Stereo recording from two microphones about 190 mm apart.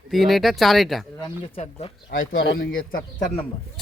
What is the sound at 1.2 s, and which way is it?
Speech, 30° left (ahead or behind).